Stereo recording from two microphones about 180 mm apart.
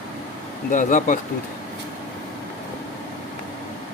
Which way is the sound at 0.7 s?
45° left (ahead or behind).